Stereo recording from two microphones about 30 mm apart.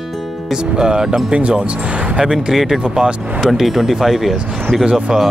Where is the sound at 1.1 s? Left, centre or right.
Right.